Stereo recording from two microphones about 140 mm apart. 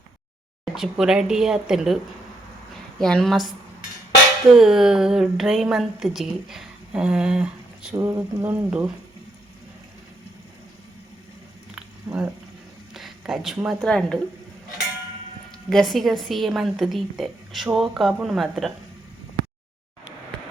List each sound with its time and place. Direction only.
0.6 s a woman's voice: 5° right (ahead or behind)
3.0 s a woman's voice: 5° left (ahead or behind)
4.5 s a woman's voice: 5° right (ahead or behind)
7.9 s speech: 20° right (ahead or behind)
12.0 s speech: 5° right (ahead or behind)
15.7 s a woman's voice: centre (ahead or behind)